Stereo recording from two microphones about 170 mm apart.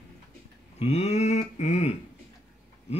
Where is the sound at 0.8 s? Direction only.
35° left (ahead or behind).